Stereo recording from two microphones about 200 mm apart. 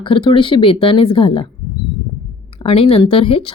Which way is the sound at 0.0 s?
25° left (ahead or behind).